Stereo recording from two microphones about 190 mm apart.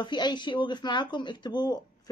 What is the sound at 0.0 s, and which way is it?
A woman's voice, 25° left (ahead or behind).